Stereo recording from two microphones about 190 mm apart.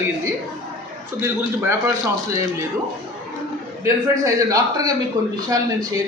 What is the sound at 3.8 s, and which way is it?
A man's voice, 15° right (ahead or behind).